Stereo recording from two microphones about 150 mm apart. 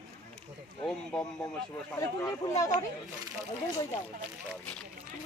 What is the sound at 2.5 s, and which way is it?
Speech, 20° left (ahead or behind).